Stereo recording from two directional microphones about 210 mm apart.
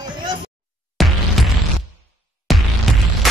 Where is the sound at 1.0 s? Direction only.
Centre (ahead or behind).